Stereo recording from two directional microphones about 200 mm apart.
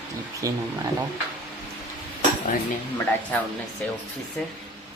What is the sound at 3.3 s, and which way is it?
Speech, 5° left (ahead or behind).